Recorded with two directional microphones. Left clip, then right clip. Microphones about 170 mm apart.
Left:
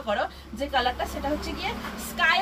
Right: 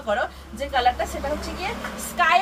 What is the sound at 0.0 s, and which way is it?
Speech, 25° right (ahead or behind).